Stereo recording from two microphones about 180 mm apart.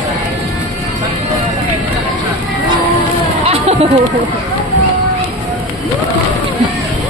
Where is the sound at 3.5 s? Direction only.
35° right (ahead or behind).